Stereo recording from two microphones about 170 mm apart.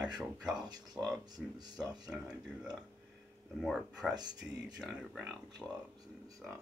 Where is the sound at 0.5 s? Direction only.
25° right (ahead or behind).